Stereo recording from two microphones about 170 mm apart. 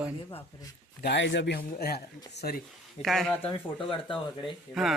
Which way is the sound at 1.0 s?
90° left.